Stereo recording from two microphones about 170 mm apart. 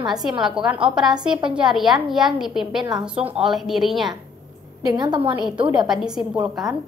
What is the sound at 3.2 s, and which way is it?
Speech, 35° right (ahead or behind).